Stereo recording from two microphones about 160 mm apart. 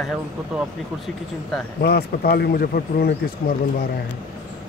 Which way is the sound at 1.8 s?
75° left (ahead or behind).